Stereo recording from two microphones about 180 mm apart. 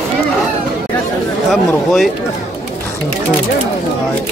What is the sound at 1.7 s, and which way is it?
Speech, centre (ahead or behind).